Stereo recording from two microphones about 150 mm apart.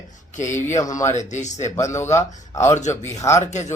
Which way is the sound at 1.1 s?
50° left (ahead or behind).